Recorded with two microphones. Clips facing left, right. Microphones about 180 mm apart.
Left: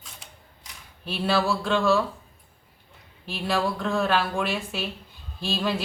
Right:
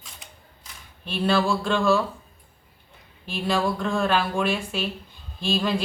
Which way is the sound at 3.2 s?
Centre (ahead or behind).